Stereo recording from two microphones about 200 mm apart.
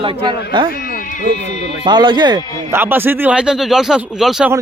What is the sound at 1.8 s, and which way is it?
Speech, 20° right (ahead or behind).